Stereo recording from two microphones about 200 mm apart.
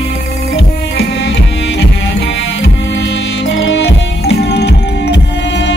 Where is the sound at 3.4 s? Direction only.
65° left (ahead or behind).